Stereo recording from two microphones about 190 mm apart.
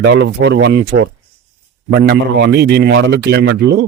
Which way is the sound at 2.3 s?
60° right (ahead or behind).